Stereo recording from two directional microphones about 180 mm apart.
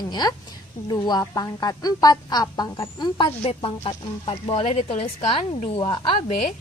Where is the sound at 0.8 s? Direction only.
25° left (ahead or behind).